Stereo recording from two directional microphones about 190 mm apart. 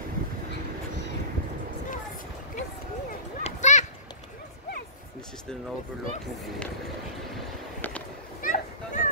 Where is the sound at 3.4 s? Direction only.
40° left (ahead or behind).